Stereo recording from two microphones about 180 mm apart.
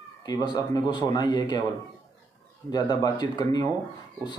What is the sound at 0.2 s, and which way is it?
A man's voice, 20° left (ahead or behind).